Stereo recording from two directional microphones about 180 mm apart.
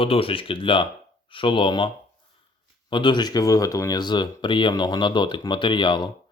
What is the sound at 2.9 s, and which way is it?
Speech, 25° left (ahead or behind).